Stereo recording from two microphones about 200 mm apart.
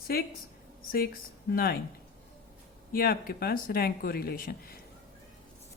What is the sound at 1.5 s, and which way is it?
Speech, 50° left (ahead or behind).